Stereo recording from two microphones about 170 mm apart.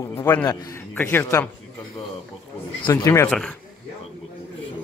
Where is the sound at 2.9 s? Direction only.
20° left (ahead or behind).